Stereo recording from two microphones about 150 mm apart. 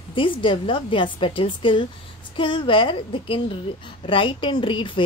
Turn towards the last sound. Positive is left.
turn(degrees=35)  # may be behind; listen again after turning